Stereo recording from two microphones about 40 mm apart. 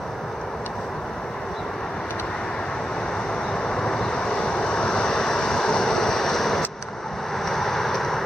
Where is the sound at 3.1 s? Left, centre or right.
Centre.